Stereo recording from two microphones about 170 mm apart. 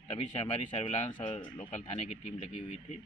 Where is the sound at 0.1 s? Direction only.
35° left (ahead or behind).